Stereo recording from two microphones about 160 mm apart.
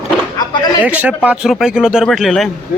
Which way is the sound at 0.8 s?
10° right (ahead or behind).